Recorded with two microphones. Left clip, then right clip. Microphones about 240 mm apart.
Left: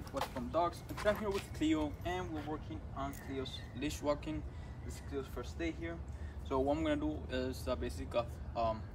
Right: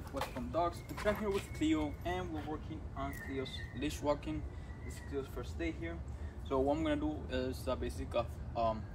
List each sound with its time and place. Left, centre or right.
0.1 s speech: centre